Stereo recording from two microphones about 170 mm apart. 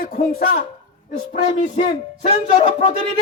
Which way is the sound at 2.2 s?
40° left (ahead or behind).